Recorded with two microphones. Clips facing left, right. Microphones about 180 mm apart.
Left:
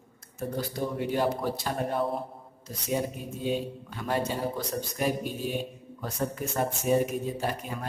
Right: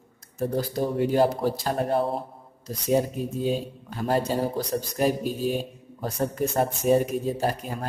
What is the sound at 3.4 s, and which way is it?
Speech, 35° right (ahead or behind).